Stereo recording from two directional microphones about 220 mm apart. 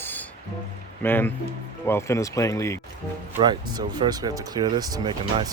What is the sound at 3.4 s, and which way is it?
Speech, 20° right (ahead or behind).